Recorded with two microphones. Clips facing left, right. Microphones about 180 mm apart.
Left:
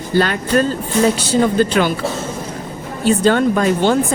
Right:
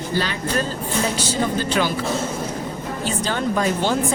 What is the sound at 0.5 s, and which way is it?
Speech, 70° left (ahead or behind).